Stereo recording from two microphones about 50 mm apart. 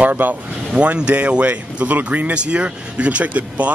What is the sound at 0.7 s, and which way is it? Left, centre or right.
Speech, right.